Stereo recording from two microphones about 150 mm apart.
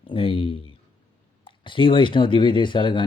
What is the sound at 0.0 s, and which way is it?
Speech, 35° left (ahead or behind).